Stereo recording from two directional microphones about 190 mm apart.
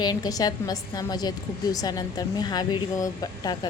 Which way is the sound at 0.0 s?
20° left (ahead or behind).